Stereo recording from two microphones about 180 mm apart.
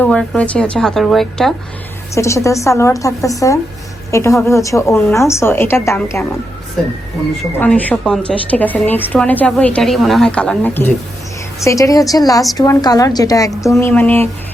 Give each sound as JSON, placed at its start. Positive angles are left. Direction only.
{"t": 0.0, "sound": "speech", "side_deg": 5}
{"t": 2.1, "sound": "speech", "side_deg": 15}
{"t": 7.6, "sound": "a woman's voice", "side_deg": 10}